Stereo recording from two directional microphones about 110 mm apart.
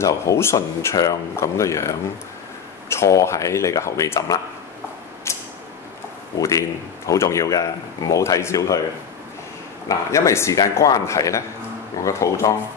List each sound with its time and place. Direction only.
0.0 s a man's voice: 25° left (ahead or behind)
6.3 s speech: 30° left (ahead or behind)
9.8 s a man's voice: 30° left (ahead or behind)